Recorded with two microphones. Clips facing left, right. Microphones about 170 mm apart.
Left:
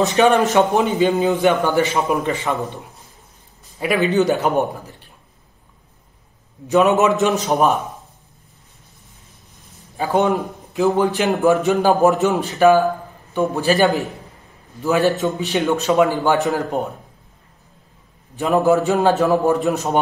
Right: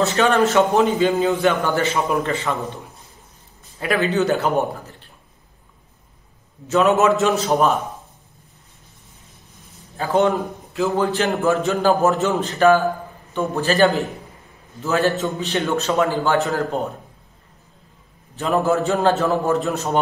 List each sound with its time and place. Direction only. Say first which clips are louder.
0.0 s a man's voice: left 2 dB; 15° left (ahead or behind)
3.8 s a man's voice: left 3 dB; 15° left (ahead or behind)
6.7 s a man's voice: left 1 dB; 15° left (ahead or behind)
9.9 s a man's voice: even; 15° left (ahead or behind)
18.3 s a man's voice: left 3 dB; 15° left (ahead or behind)